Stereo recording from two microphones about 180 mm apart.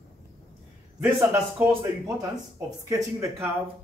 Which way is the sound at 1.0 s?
10° right (ahead or behind).